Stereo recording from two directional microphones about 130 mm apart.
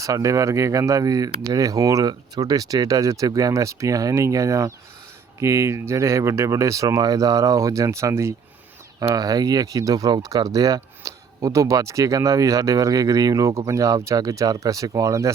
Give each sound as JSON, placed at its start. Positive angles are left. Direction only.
{"t": 0.0, "sound": "speech", "side_deg": -25}